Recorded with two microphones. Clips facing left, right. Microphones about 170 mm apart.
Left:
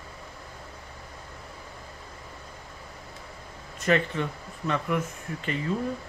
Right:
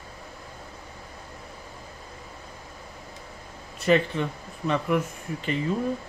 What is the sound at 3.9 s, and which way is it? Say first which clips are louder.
Speech: right 3 dB; 20° right (ahead or behind).